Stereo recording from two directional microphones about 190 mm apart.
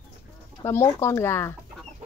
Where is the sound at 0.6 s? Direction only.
15° left (ahead or behind).